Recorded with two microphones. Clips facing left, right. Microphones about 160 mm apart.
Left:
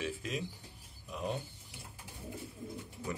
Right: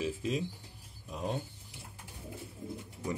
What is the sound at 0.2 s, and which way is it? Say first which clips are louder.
A man's voice: right 5 dB; 25° right (ahead or behind).